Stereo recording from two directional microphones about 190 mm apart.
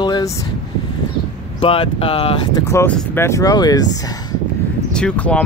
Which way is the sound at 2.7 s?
15° left (ahead or behind).